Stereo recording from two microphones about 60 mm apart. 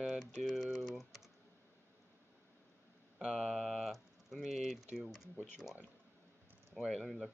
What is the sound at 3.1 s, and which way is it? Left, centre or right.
Speech, centre.